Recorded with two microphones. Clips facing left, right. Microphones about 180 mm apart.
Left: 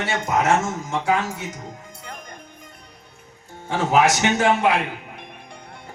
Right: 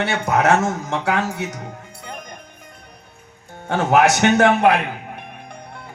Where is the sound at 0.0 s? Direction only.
65° right (ahead or behind).